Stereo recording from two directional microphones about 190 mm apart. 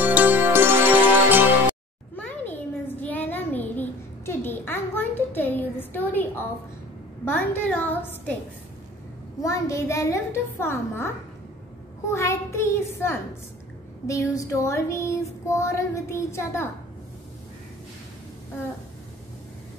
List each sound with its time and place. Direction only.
0.0 s music: 10° right (ahead or behind)
2.1 s a sound: 10° left (ahead or behind)
7.3 s child singing: 10° left (ahead or behind)
9.4 s child singing: 15° left (ahead or behind)
12.1 s child singing: 15° left (ahead or behind)